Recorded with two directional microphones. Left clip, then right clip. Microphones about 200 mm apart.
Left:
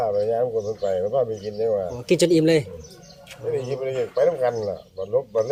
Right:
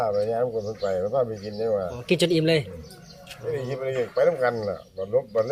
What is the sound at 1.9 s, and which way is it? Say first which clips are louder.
Speech: left 4 dB; 35° left (ahead or behind).